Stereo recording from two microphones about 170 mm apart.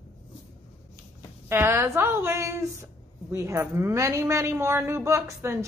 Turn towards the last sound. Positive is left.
turn(degrees=-15)  # may be behind; listen again after turning